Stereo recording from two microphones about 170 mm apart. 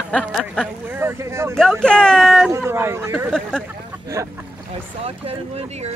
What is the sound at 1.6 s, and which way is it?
Speech, 5° left (ahead or behind).